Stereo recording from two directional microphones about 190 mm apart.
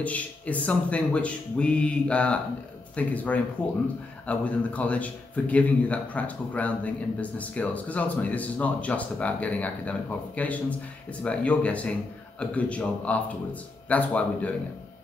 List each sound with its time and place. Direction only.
0.0 s speech: 10° left (ahead or behind)